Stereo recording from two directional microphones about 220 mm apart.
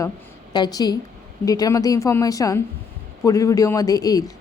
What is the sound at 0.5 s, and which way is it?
A woman's voice, 20° left (ahead or behind).